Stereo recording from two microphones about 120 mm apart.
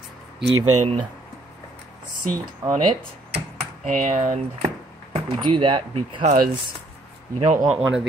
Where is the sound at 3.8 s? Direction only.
90° right.